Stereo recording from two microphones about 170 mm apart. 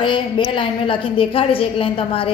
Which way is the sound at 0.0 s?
30° left (ahead or behind).